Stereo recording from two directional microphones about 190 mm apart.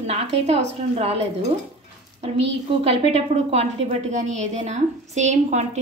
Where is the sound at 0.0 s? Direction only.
35° right (ahead or behind).